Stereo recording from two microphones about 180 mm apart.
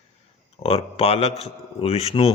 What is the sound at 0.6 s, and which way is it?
A man's voice, 35° left (ahead or behind).